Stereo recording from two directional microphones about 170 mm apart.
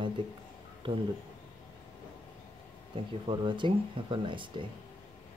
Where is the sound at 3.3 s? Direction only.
30° right (ahead or behind).